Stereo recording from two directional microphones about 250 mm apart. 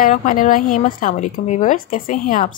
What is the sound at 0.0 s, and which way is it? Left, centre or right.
A woman's voice, left.